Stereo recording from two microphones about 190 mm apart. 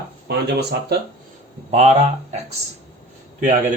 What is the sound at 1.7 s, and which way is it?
Speech, 35° right (ahead or behind).